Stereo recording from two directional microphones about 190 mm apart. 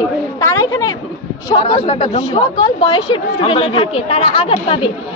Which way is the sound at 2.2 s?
25° left (ahead or behind).